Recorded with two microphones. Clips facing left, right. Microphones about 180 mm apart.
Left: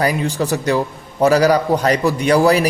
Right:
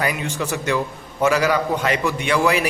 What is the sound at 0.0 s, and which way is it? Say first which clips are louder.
A man's voice: left 6 dB; 35° left (ahead or behind).